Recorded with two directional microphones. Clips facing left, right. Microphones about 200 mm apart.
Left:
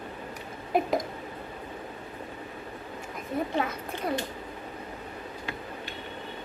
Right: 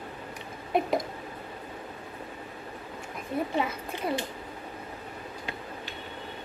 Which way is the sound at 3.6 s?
5° right (ahead or behind).